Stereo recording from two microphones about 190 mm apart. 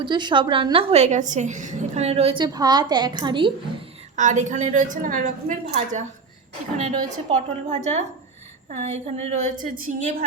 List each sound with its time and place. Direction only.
0.0 s a woman's voice: 25° right (ahead or behind)
4.1 s a woman's voice: 40° right (ahead or behind)